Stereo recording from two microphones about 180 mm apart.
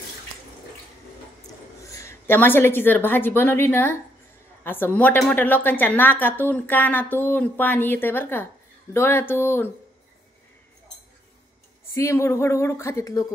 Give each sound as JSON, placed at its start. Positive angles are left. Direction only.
{"t": 1.8, "sound": "a woman's voice", "side_deg": 15}
{"t": 11.9, "sound": "a woman's voice", "side_deg": 15}